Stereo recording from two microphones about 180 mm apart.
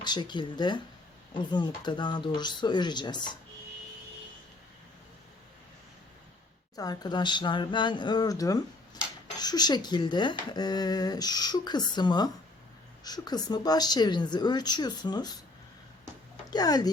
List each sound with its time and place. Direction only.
0.0 s speech: 25° left (ahead or behind)
6.7 s speech: 20° left (ahead or behind)
16.5 s speech: 20° left (ahead or behind)